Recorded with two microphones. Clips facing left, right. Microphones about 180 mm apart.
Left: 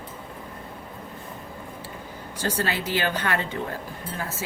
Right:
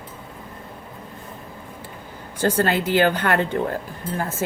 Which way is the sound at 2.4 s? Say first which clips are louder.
Right 7 dB; 55° right (ahead or behind).